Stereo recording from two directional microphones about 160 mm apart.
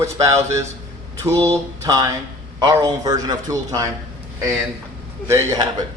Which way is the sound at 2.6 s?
25° right (ahead or behind).